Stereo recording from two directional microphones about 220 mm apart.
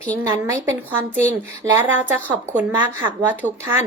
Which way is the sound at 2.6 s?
10° right (ahead or behind).